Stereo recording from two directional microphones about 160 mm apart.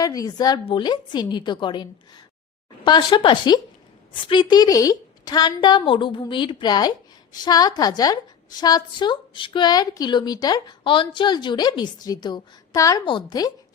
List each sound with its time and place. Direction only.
0.0 s a woman's voice: 20° left (ahead or behind)